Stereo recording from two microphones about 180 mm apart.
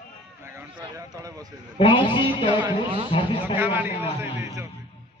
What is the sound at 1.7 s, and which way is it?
Speech, 25° left (ahead or behind).